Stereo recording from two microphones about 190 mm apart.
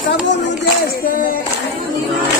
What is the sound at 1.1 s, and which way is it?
Speech, 45° left (ahead or behind).